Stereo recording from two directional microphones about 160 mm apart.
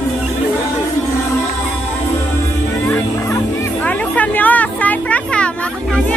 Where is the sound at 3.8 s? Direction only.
10° left (ahead or behind).